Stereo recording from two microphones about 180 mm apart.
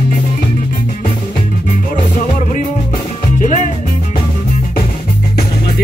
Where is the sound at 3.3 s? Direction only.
45° left (ahead or behind).